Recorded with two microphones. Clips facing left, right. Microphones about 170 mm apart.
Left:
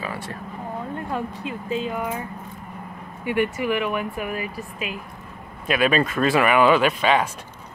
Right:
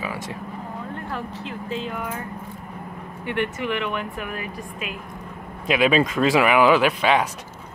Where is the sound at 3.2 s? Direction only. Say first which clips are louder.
Left 3 dB; 10° left (ahead or behind).